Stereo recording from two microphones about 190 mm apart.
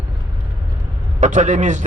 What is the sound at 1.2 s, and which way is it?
Speech, 40° right (ahead or behind).